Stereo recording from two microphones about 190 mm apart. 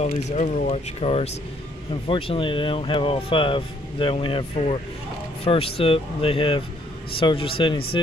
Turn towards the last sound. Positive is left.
turn(degrees=25)  # may be behind; listen again after turning